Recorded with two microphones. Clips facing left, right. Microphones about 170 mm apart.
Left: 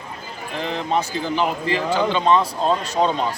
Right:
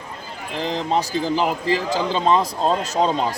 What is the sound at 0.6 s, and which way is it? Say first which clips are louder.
Speech: right 1 dB; 35° right (ahead or behind).